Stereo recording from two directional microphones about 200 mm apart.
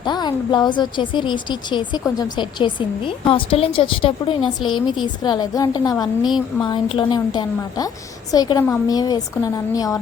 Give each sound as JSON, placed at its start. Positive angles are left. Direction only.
{"t": 0.0, "sound": "a woman's voice", "side_deg": 20}